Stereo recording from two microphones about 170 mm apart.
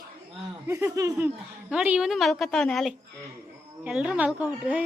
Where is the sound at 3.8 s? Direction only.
5° right (ahead or behind).